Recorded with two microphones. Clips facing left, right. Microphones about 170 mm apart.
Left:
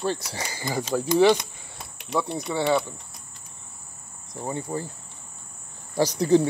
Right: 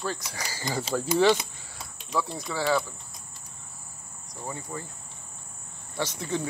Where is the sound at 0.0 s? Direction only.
30° left (ahead or behind).